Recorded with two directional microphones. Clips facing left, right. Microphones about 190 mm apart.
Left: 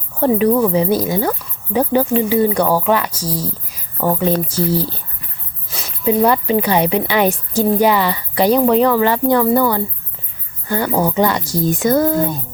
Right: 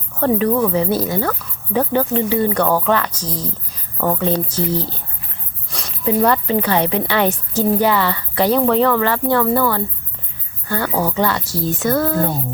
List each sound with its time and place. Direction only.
0.2 s speech: 10° left (ahead or behind)
5.7 s a sound: 5° left (ahead or behind)
6.2 s speech: 10° left (ahead or behind)